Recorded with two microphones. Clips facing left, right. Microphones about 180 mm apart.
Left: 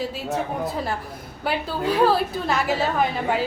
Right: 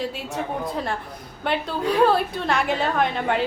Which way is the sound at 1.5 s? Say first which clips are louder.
Even; 5° left (ahead or behind).